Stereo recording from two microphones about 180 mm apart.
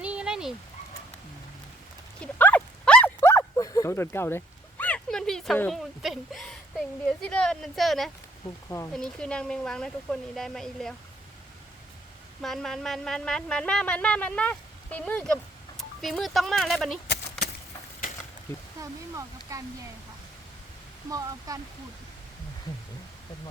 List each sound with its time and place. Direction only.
0.0 s a sound: 5° right (ahead or behind)
2.2 s dog: 10° left (ahead or behind)
8.9 s a woman's voice: 5° left (ahead or behind)
12.4 s a woman's voice: centre (ahead or behind)
18.8 s speech: 20° right (ahead or behind)
21.1 s speech: 20° right (ahead or behind)